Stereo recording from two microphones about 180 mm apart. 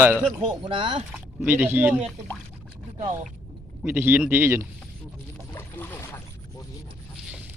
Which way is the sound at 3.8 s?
10° right (ahead or behind).